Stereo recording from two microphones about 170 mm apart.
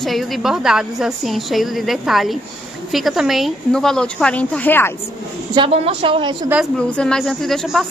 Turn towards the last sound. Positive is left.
turn(degrees=0)  # may be behind; listen again after turning